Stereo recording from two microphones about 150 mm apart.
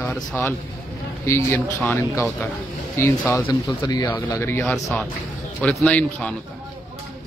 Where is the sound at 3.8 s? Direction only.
25° left (ahead or behind).